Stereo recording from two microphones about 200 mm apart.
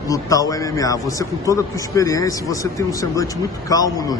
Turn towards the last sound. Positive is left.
turn(degrees=20)  # may be behind; listen again after turning